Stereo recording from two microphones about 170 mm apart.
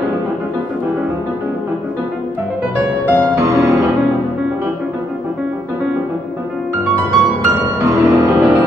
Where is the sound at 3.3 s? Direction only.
20° right (ahead or behind).